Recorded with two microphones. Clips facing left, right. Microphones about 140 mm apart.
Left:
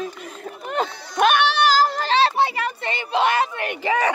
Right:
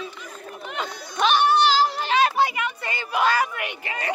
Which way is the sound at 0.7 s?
45° left (ahead or behind).